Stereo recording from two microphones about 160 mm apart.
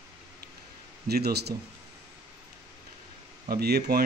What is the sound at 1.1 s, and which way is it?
Speech, 85° right.